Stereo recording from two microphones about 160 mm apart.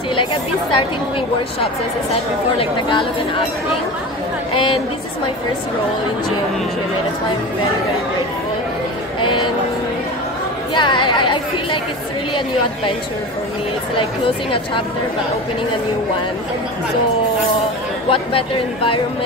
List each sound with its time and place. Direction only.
0.1 s speech: 30° left (ahead or behind)
2.6 s speech: 30° left (ahead or behind)
9.2 s a sound: 30° left (ahead or behind)
10.7 s a woman's voice: 30° left (ahead or behind)
13.9 s speech: 35° left (ahead or behind)
18.1 s speech: 35° left (ahead or behind)